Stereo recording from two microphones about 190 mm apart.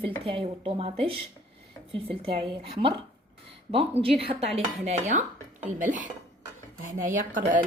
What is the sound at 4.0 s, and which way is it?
Speech, 30° right (ahead or behind).